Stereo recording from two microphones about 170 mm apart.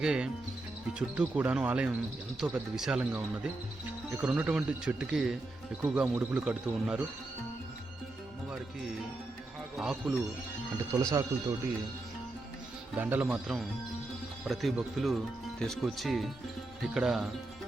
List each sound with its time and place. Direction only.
0.0 s speech: 5° right (ahead or behind)
9.7 s speech: centre (ahead or behind)
10.9 s speech: 20° right (ahead or behind)
13.0 s speech: 10° right (ahead or behind)